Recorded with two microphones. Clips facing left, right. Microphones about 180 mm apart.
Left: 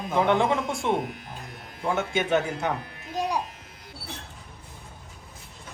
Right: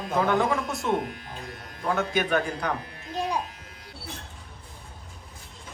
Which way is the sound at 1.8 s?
25° left (ahead or behind).